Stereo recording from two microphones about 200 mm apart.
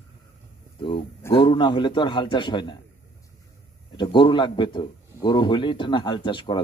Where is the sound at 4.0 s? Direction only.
25° left (ahead or behind).